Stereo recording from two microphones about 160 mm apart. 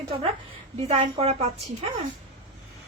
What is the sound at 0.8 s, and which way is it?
Speech, 40° right (ahead or behind).